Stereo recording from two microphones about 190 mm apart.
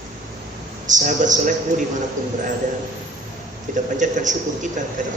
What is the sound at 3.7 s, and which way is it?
A man's voice, 40° right (ahead or behind).